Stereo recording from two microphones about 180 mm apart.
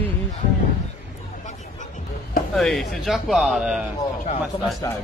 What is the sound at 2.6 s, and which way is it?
Speech, centre (ahead or behind).